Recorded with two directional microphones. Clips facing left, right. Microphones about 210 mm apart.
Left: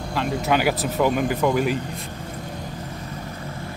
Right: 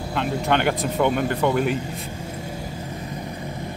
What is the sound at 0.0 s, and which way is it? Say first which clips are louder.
Speech: even; 5° right (ahead or behind).